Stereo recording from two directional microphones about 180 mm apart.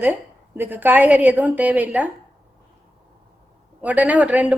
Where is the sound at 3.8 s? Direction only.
10° right (ahead or behind).